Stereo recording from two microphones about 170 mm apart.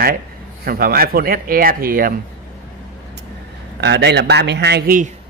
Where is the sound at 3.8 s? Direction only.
85° right.